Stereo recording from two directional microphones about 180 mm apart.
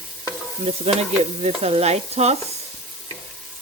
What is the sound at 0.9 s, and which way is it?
Stir, 35° right (ahead or behind).